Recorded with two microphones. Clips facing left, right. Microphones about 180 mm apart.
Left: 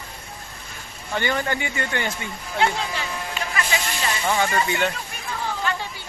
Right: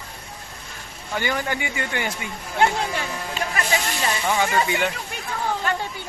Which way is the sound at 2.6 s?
50° right (ahead or behind).